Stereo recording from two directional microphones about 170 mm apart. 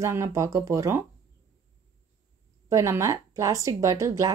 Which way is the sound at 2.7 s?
15° right (ahead or behind).